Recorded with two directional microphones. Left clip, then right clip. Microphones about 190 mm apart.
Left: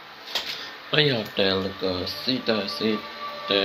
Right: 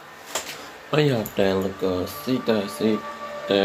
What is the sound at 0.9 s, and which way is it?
Speech, 15° right (ahead or behind).